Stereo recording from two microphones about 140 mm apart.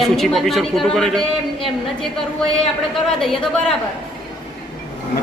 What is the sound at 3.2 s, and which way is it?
Speech, 5° left (ahead or behind).